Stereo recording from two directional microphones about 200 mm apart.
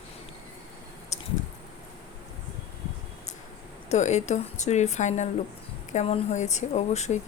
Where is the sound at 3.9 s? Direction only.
35° left (ahead or behind).